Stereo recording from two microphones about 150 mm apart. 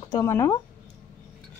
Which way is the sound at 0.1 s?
20° left (ahead or behind).